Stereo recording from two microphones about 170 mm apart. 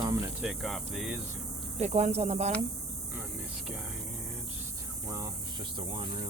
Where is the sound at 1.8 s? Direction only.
40° right (ahead or behind).